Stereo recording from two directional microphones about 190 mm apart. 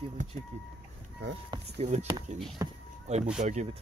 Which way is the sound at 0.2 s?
45° right (ahead or behind).